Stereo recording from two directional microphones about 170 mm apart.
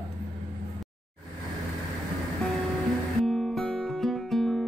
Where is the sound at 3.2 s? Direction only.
Centre (ahead or behind).